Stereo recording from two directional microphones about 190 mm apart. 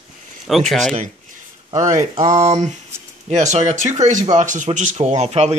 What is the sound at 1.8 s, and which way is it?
Speech, 35° right (ahead or behind).